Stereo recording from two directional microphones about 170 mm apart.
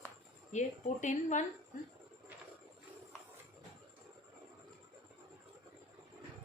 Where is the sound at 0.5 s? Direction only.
45° left (ahead or behind).